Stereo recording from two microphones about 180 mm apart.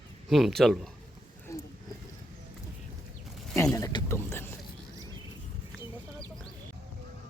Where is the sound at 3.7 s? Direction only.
15° left (ahead or behind).